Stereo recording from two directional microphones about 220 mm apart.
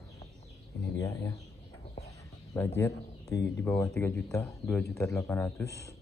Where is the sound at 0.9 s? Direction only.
15° left (ahead or behind).